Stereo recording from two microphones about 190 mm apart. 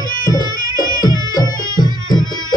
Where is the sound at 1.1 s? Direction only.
20° right (ahead or behind).